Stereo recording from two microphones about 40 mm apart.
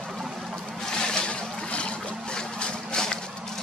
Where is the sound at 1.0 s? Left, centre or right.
Left.